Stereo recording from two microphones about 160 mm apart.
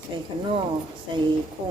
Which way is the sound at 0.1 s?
30° right (ahead or behind).